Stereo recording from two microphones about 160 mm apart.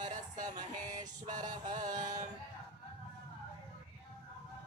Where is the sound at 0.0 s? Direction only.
50° right (ahead or behind).